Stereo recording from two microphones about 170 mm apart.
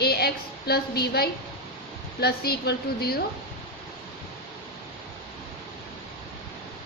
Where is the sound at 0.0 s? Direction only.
65° left (ahead or behind).